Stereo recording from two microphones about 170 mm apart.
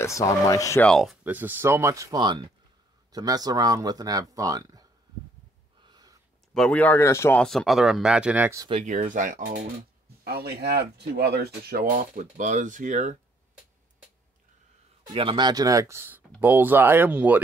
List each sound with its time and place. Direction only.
0.0 s speech: 20° left (ahead or behind)
0.8 s speech: centre (ahead or behind)
1.2 s speech: 10° right (ahead or behind)
5.9 s a sound: 25° right (ahead or behind)
6.5 s speech: 5° left (ahead or behind)
7.4 s speech: centre (ahead or behind)
8.8 s speech: 45° right (ahead or behind)
10.2 s speech: 65° right (ahead or behind); by 13.2 s 45° right (ahead or behind)
15.1 s speech: 30° right (ahead or behind); by 17.4 s 10° right (ahead or behind)